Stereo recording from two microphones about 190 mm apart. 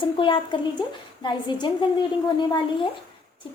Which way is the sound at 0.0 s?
25° left (ahead or behind).